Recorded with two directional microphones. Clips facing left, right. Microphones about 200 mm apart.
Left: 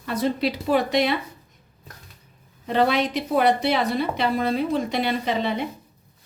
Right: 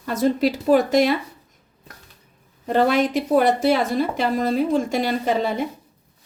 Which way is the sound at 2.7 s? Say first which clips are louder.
Right 3 dB; 45° right (ahead or behind).